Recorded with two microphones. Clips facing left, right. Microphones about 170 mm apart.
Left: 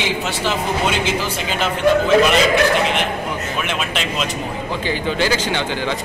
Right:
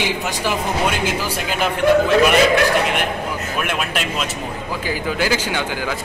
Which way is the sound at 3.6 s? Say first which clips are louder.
Right 2 dB; 10° right (ahead or behind).